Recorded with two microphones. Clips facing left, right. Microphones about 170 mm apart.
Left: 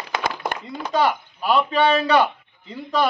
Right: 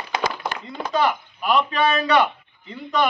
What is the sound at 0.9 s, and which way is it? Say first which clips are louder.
Chopping: left 1 dB; 30° left (ahead or behind).